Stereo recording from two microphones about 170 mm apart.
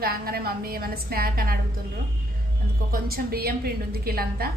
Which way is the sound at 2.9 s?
65° right (ahead or behind).